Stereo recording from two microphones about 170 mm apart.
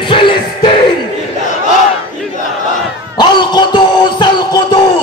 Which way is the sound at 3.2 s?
25° left (ahead or behind).